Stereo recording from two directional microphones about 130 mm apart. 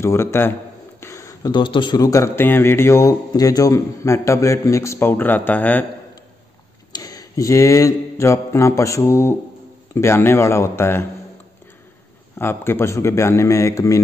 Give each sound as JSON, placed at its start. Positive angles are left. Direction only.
{"t": 0.0, "sound": "speech", "side_deg": 20}
{"t": 1.0, "sound": "a sound", "side_deg": 25}
{"t": 1.5, "sound": "speech", "side_deg": 40}
{"t": 6.9, "sound": "mantra", "side_deg": 30}
{"t": 9.9, "sound": "speech", "side_deg": 20}
{"t": 12.4, "sound": "speech", "side_deg": 20}